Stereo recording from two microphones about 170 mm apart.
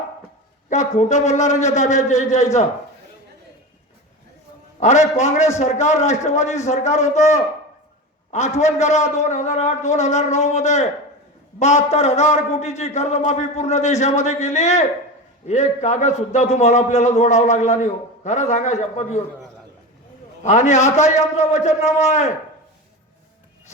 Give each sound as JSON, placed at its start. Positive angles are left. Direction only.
{"t": 0.7, "sound": "a man's voice", "side_deg": 45}
{"t": 4.8, "sound": "a man's voice", "side_deg": 45}
{"t": 20.4, "sound": "a man's voice", "side_deg": 45}